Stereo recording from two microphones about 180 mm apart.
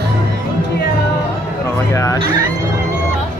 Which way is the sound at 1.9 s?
15° left (ahead or behind).